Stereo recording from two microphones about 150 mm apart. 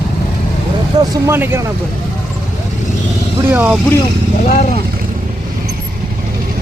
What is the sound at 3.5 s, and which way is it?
Speech, 10° right (ahead or behind).